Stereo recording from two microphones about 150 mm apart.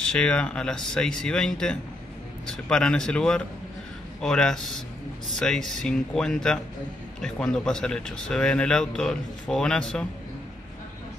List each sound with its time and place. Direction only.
0.0 s speech: 5° left (ahead or behind)